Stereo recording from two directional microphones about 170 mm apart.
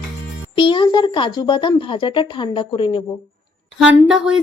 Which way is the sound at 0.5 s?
30° left (ahead or behind).